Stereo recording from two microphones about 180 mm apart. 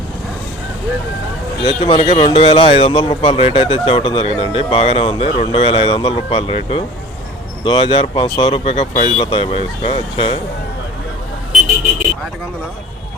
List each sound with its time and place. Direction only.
1.6 s speech: 30° left (ahead or behind)
9.2 s speech: 30° left (ahead or behind)